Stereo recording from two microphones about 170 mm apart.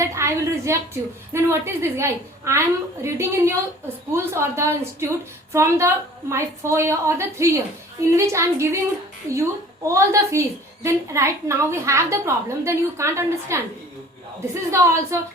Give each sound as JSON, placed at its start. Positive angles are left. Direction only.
{"t": 0.0, "sound": "a woman's voice", "side_deg": -15}
{"t": 14.7, "sound": "a woman's voice", "side_deg": -15}